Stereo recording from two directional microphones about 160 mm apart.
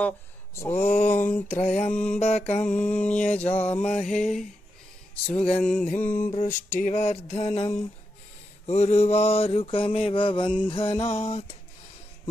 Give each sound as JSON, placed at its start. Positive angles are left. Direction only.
{"t": 0.6, "sound": "music", "side_deg": 15}
{"t": 1.7, "sound": "mantra", "side_deg": 5}
{"t": 2.6, "sound": "music", "side_deg": 5}
{"t": 5.5, "sound": "music", "side_deg": 5}
{"t": 6.7, "sound": "mantra", "side_deg": 50}